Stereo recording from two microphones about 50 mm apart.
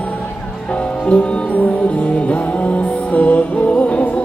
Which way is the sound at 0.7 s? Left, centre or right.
Left.